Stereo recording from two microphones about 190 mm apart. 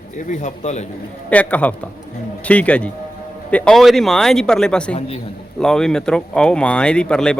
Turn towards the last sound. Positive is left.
turn(degrees=5)  # may be behind; listen again after turning